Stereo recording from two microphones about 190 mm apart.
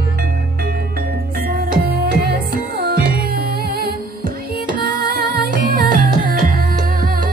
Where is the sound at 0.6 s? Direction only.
55° right (ahead or behind).